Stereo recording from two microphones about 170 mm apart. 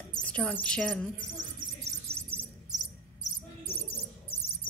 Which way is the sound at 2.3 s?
15° right (ahead or behind).